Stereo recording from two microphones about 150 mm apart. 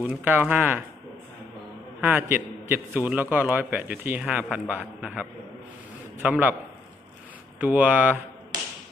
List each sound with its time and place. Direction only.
0.0 s a man's voice: 10° right (ahead or behind)
2.0 s a man's voice: 15° right (ahead or behind)
7.6 s a man's voice: 10° right (ahead or behind)